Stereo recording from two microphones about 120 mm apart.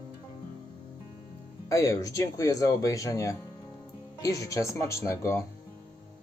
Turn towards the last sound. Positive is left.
turn(degrees=25)  # may be behind; listen again after turning